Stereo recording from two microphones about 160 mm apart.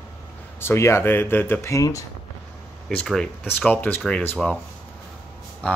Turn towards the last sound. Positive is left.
turn(degrees=10)  # may be behind; listen again after turning